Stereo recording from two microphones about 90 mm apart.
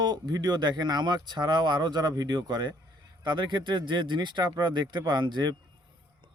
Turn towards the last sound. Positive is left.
turn(degrees=-55)  # may be behind; listen again after turning